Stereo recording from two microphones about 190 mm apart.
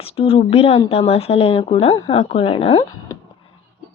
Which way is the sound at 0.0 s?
30° left (ahead or behind).